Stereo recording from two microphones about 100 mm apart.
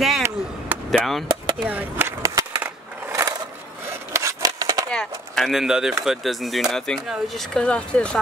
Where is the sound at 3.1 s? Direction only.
30° right (ahead or behind).